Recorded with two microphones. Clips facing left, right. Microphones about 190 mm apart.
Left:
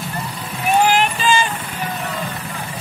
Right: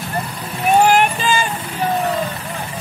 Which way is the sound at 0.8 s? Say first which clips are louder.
Right 2 dB; 50° right (ahead or behind).